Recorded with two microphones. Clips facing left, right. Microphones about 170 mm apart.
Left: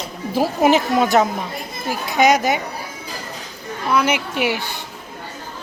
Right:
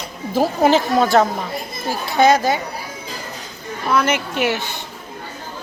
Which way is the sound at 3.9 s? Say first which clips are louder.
Even; 10° left (ahead or behind).